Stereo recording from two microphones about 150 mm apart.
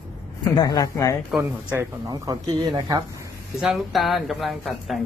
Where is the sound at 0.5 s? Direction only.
25° left (ahead or behind).